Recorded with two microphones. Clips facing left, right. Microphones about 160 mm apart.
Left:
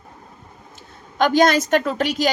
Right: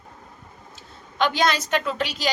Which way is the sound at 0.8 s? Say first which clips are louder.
Left 4 dB; 45° left (ahead or behind).